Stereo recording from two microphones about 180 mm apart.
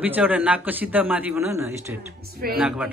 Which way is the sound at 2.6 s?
5° right (ahead or behind).